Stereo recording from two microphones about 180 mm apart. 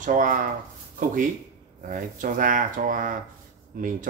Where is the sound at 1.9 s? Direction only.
50° right (ahead or behind).